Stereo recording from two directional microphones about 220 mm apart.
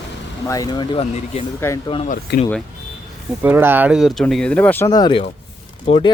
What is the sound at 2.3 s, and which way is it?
Speech, 50° left (ahead or behind).